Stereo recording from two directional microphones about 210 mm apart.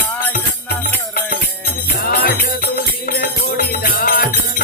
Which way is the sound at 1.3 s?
45° left (ahead or behind).